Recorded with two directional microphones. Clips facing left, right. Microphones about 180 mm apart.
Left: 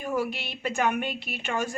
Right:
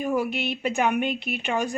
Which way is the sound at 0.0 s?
15° right (ahead or behind).